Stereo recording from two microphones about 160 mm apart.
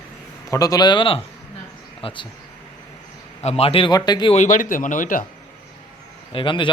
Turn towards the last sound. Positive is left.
turn(degrees=30)  # may be behind; listen again after turning